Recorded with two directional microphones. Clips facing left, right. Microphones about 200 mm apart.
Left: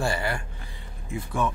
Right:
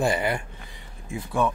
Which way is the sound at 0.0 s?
20° right (ahead or behind).